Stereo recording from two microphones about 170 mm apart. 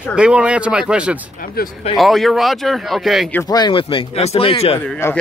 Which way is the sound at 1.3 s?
55° left (ahead or behind).